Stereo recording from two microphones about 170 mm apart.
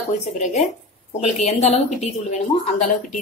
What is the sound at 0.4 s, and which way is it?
A woman's voice, 45° left (ahead or behind).